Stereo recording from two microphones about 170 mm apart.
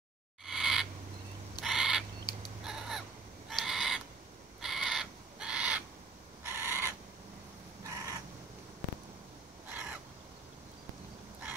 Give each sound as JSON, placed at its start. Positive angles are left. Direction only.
{"t": 0.5, "sound": "owl", "side_deg": 0}
{"t": 2.3, "sound": "a sound", "side_deg": 25}
{"t": 2.6, "sound": "fowl", "side_deg": -5}
{"t": 3.6, "sound": "owl", "side_deg": 0}
{"t": 4.6, "sound": "crow", "side_deg": 0}
{"t": 6.4, "sound": "owl", "side_deg": -15}
{"t": 7.8, "sound": "crow", "side_deg": -20}
{"t": 9.7, "sound": "crow", "side_deg": -10}